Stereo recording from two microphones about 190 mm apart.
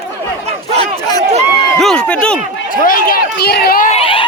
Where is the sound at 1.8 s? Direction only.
5° left (ahead or behind).